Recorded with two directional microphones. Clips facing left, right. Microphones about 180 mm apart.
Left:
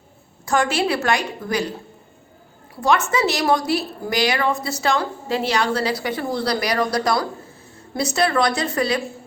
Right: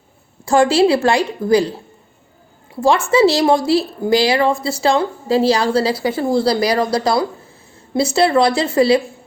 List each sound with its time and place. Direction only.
0.4 s a woman's voice: 30° right (ahead or behind)
2.8 s a woman's voice: 30° right (ahead or behind)